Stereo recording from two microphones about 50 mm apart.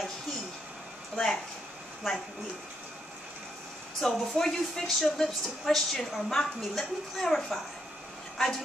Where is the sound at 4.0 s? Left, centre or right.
Centre.